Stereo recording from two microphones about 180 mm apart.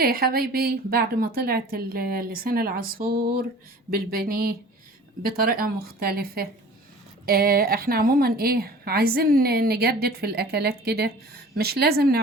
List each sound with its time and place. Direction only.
0.0 s a woman's voice: 55° right (ahead or behind)